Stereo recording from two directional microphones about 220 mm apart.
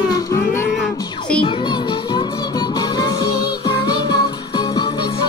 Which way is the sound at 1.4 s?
20° left (ahead or behind).